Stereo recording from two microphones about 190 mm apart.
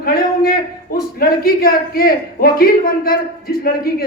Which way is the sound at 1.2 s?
50° left (ahead or behind).